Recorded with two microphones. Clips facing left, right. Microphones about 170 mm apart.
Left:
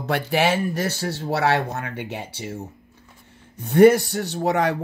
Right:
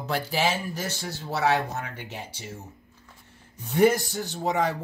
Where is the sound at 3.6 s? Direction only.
60° left (ahead or behind).